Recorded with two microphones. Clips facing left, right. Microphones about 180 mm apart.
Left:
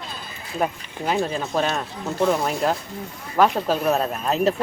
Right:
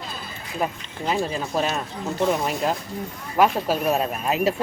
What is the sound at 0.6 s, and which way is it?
Speech, centre (ahead or behind).